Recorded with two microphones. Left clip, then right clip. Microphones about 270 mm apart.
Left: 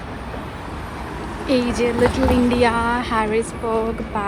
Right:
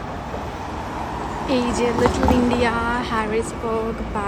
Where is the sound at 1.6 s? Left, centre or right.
Right.